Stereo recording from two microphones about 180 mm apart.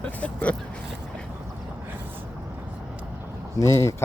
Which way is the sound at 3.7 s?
15° left (ahead or behind).